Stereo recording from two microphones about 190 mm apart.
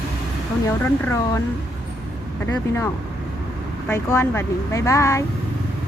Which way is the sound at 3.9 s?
15° left (ahead or behind).